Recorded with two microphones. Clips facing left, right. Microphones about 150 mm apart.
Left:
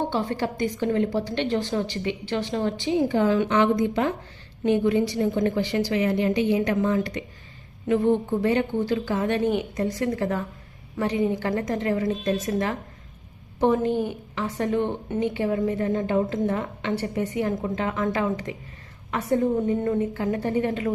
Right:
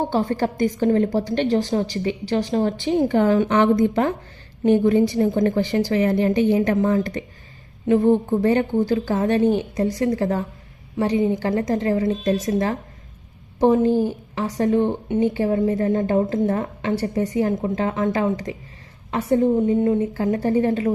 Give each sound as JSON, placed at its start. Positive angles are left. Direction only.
{"t": 0.1, "sound": "a woman's voice", "side_deg": -45}
{"t": 2.7, "sound": "a woman's voice", "side_deg": -55}
{"t": 20.1, "sound": "a woman's voice", "side_deg": -35}